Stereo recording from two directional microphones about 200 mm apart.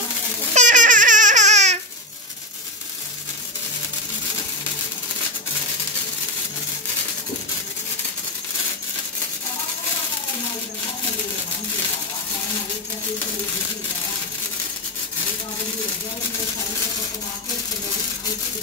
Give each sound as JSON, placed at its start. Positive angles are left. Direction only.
{"t": 0.6, "sound": "babbling", "side_deg": -40}